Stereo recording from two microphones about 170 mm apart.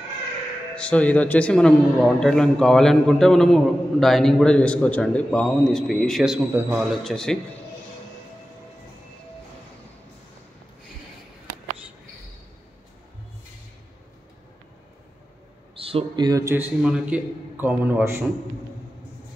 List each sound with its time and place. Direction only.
0.7 s a man's voice: 5° left (ahead or behind)
7.0 s a man's voice: 5° left (ahead or behind)
15.8 s speech: 35° right (ahead or behind)
16.3 s a man's voice: 20° right (ahead or behind)
16.8 s a man's voice: 5° right (ahead or behind)